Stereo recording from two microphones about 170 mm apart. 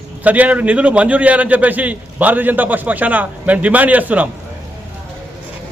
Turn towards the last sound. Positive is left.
turn(degrees=-10)  # may be behind; listen again after turning